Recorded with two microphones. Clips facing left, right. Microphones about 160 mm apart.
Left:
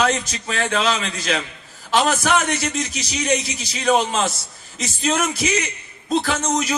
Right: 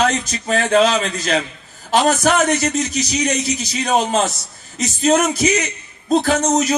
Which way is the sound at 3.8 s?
35° right (ahead or behind).